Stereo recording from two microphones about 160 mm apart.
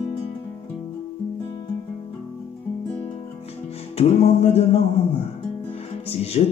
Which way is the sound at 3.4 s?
40° left (ahead or behind).